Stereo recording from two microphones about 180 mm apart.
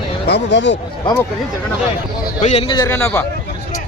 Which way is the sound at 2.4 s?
40° left (ahead or behind).